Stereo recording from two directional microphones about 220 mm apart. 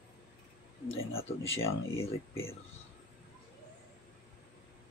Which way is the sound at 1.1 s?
25° left (ahead or behind).